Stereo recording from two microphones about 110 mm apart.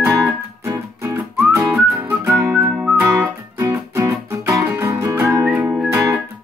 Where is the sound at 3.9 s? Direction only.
25° right (ahead or behind).